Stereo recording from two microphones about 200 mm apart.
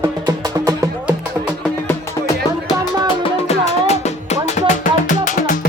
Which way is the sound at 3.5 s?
35° left (ahead or behind).